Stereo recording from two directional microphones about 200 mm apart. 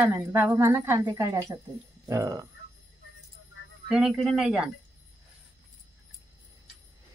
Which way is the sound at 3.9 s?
Centre (ahead or behind).